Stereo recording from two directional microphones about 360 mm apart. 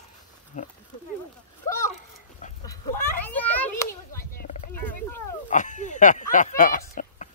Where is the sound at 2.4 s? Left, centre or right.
Centre.